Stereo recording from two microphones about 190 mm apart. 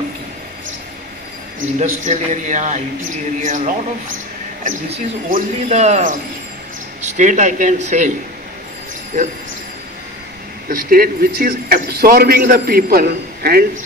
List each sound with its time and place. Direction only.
1.8 s a man's voice: 40° right (ahead or behind)
9.1 s a man's voice: 40° right (ahead or behind)
10.7 s a man's voice: 50° right (ahead or behind)